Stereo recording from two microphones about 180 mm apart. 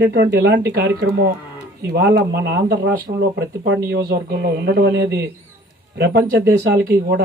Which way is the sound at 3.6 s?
65° right (ahead or behind).